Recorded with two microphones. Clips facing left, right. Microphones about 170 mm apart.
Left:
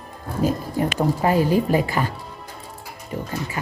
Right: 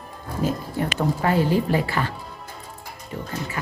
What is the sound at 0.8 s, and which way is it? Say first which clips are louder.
Speech: left 3 dB; 15° left (ahead or behind).